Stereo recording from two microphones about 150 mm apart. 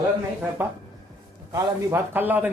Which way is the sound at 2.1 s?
10° right (ahead or behind).